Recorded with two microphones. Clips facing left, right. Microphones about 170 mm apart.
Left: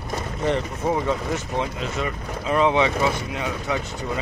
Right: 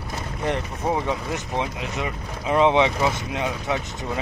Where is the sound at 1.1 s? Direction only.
15° right (ahead or behind).